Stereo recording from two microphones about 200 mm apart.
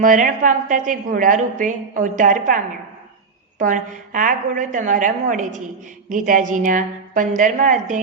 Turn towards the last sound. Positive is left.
turn(degrees=-40)  # may be behind; listen again after turning